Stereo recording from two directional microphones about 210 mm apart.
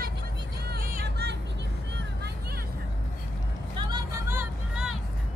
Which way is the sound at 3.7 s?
20° right (ahead or behind).